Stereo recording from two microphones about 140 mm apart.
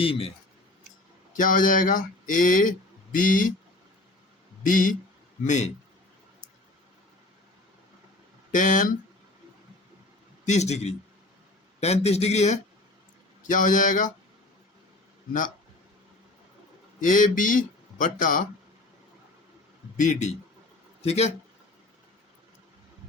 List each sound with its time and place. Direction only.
0.0 s speech: 45° left (ahead or behind)
1.3 s speech: 70° left (ahead or behind)
4.6 s speech: 70° left (ahead or behind)
5.5 s a man's voice: 55° left (ahead or behind)
8.5 s speech: 65° left (ahead or behind)
10.4 s speech: 55° left (ahead or behind)
13.5 s speech: 65° left (ahead or behind)
15.3 s speech: 65° left (ahead or behind)
17.0 s speech: 65° left (ahead or behind)
20.0 s a man's voice: 60° left (ahead or behind)